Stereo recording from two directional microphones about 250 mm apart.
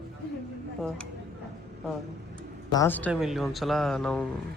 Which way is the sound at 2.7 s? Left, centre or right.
Centre.